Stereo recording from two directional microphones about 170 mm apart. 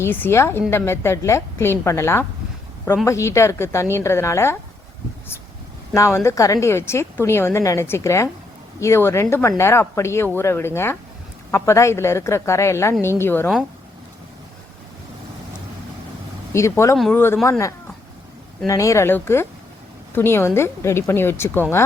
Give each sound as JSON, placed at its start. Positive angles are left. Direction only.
{"t": 0.0, "sound": "a woman's voice", "side_deg": 15}
{"t": 6.1, "sound": "a woman's voice", "side_deg": 15}
{"t": 16.5, "sound": "a woman's voice", "side_deg": 15}
{"t": 18.7, "sound": "a woman's voice", "side_deg": 20}